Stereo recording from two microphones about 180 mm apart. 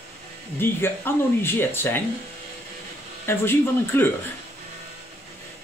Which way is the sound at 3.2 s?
15° left (ahead or behind).